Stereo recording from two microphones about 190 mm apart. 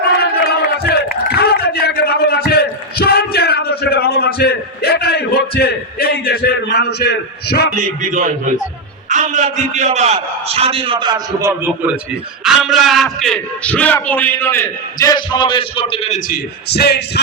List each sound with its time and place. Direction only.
0.9 s a sound: 55° left (ahead or behind)
7.8 s a man's voice: 40° right (ahead or behind); by 11.2 s 25° right (ahead or behind)
11.3 s a man's voice: 15° right (ahead or behind); by 16.2 s 35° left (ahead or behind)
16.3 s a man's voice: 60° left (ahead or behind)